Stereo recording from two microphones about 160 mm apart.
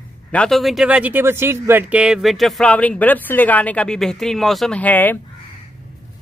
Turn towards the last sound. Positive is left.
turn(degrees=10)  # may be behind; listen again after turning